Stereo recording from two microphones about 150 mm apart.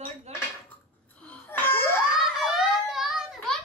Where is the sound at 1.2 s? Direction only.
10° left (ahead or behind).